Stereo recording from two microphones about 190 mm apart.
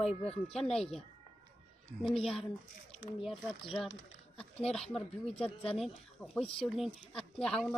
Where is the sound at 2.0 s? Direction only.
Centre (ahead or behind).